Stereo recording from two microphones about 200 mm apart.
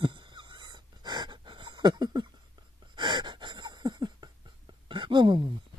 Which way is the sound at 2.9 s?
20° right (ahead or behind).